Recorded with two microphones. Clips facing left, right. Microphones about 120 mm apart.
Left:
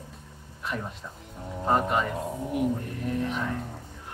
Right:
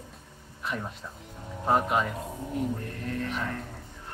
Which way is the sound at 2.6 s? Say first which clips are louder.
Left 3 dB; 15° left (ahead or behind).